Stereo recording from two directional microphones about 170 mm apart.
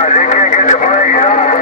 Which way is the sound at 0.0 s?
45° left (ahead or behind).